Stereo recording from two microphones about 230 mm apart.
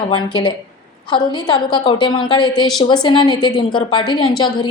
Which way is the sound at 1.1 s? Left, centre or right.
Centre.